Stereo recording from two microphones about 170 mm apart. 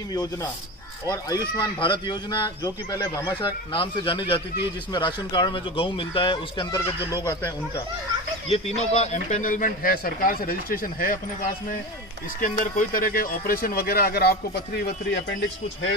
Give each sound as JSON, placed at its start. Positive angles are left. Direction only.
{"t": 0.1, "sound": "speech", "side_deg": 20}
{"t": 8.5, "sound": "speech", "side_deg": 40}
{"t": 12.4, "sound": "speech", "side_deg": 50}